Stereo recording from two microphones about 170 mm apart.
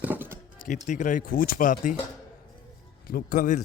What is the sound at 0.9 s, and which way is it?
A man's voice, 50° left (ahead or behind).